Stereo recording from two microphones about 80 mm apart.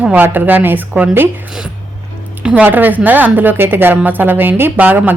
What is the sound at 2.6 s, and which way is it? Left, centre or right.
Speech, right.